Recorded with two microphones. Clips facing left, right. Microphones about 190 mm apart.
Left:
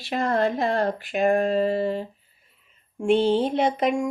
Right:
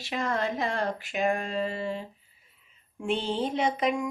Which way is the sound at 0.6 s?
35° left (ahead or behind).